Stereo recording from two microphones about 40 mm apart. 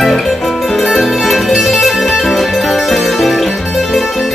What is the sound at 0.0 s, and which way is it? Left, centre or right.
Music, centre.